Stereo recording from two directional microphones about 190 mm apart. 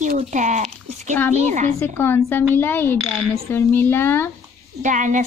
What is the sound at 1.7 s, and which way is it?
Speech, 10° left (ahead or behind).